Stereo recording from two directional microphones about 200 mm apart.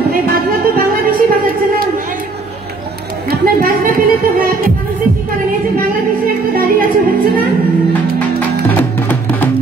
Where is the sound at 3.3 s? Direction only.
45° right (ahead or behind).